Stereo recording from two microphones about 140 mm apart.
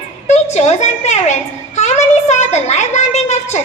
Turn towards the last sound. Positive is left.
turn(degrees=55)  # may be behind; listen again after turning